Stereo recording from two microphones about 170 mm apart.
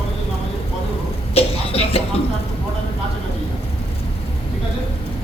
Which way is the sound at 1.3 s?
35° left (ahead or behind).